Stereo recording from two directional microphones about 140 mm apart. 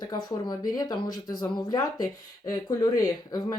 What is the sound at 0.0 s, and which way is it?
Speech, 30° left (ahead or behind).